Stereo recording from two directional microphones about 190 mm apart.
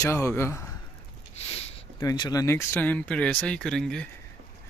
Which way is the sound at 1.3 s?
30° left (ahead or behind).